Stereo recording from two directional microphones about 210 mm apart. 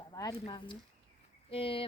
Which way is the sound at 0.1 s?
15° left (ahead or behind).